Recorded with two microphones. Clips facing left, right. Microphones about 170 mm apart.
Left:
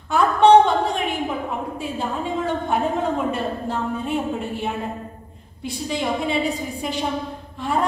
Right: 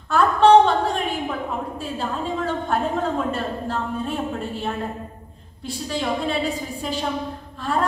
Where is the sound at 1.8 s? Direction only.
15° left (ahead or behind).